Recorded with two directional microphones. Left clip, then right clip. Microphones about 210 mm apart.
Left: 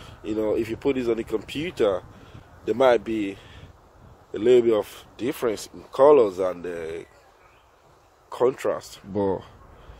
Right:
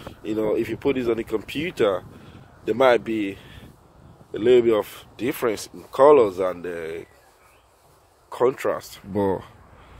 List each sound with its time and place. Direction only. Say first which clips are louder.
0.0 s speech: right 1 dB; 10° right (ahead or behind)
8.3 s speech: right 1 dB; 10° right (ahead or behind)